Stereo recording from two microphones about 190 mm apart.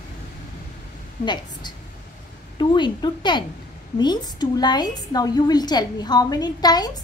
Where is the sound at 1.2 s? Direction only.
20° left (ahead or behind).